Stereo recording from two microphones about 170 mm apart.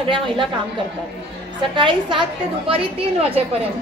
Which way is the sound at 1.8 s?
30° right (ahead or behind).